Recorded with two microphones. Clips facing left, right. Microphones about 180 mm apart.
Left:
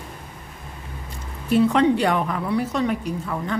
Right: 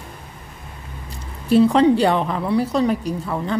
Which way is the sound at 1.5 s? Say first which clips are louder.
Right 4 dB; 35° right (ahead or behind).